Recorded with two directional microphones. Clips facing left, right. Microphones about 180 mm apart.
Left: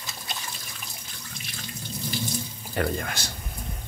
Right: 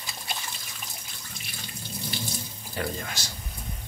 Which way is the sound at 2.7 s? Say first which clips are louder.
Left 5 dB; 55° left (ahead or behind).